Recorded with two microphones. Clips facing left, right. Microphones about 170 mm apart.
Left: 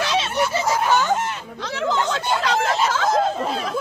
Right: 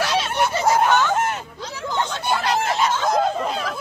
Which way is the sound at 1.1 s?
50° right (ahead or behind).